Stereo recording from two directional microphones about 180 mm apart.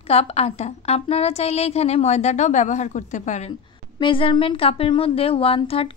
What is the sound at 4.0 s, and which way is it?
Speech, 30° left (ahead or behind).